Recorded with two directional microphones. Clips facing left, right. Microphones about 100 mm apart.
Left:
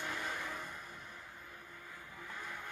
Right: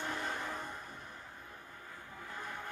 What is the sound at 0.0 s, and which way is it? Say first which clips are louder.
Vehicle: right 2 dB; 30° right (ahead or behind).